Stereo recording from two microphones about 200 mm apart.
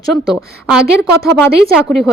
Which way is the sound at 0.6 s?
5° right (ahead or behind).